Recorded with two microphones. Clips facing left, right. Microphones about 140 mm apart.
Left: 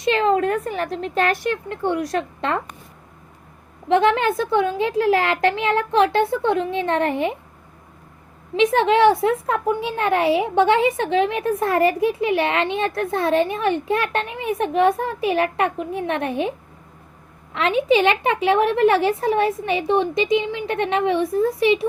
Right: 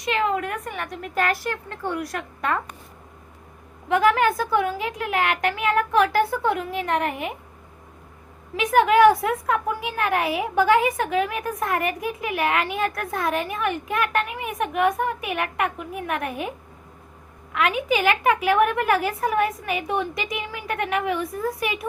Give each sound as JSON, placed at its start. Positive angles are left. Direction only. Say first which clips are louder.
{"t": 0.0, "sound": "a woman's voice", "louder": "left 6 dB", "side_deg": 30}
{"t": 3.8, "sound": "a woman's voice", "louder": "left 2 dB", "side_deg": 25}
{"t": 8.5, "sound": "a woman's voice", "louder": "left 1 dB", "side_deg": 25}